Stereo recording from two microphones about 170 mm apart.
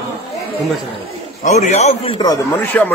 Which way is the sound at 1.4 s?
45° left (ahead or behind).